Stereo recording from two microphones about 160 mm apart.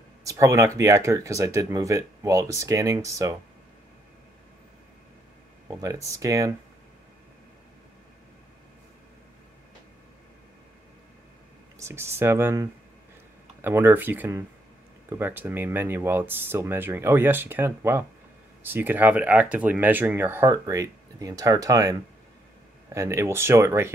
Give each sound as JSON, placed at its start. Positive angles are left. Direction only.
{"t": 0.2, "sound": "speech", "side_deg": -20}
{"t": 5.7, "sound": "speech", "side_deg": -20}
{"t": 11.8, "sound": "speech", "side_deg": -15}
{"t": 22.9, "sound": "speech", "side_deg": -15}